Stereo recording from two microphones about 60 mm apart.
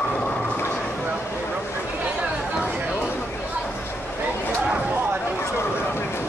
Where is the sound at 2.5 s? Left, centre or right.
Right.